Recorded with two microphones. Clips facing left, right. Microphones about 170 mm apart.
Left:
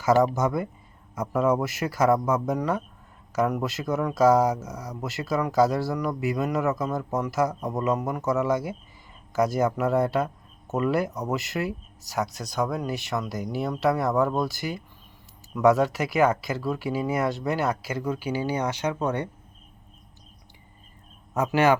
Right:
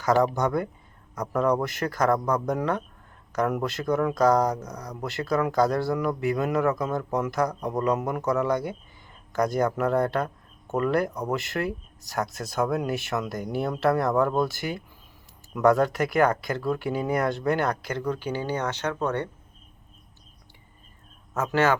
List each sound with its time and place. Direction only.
0.0 s speech: 5° left (ahead or behind)
21.3 s a man's voice: 15° left (ahead or behind)